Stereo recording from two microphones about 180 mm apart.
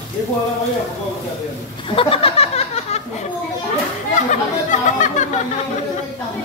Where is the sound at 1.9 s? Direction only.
30° left (ahead or behind).